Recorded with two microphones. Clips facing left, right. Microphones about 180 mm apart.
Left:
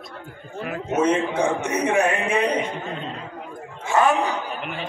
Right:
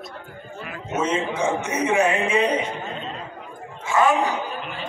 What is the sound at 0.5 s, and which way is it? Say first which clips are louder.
A man's voice: left 4 dB; 55° left (ahead or behind).